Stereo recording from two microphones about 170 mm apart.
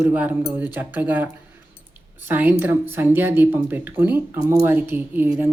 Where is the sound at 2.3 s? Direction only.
10° right (ahead or behind).